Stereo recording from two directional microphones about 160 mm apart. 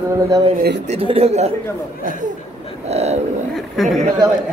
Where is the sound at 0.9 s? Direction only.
35° right (ahead or behind).